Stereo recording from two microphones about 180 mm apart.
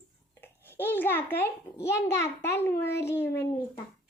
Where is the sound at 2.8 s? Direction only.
70° left (ahead or behind).